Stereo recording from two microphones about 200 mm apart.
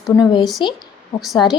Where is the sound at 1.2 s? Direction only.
Centre (ahead or behind).